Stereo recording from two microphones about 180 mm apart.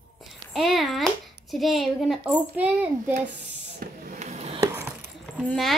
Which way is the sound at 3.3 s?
55° right (ahead or behind).